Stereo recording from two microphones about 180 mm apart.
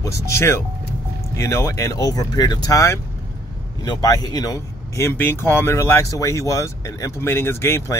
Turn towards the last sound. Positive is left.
turn(degrees=15)  # may be behind; listen again after turning